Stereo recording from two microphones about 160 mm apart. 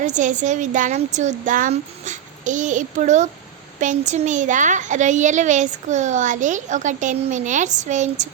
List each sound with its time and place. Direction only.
0.0 s a child's voice: 50° right (ahead or behind)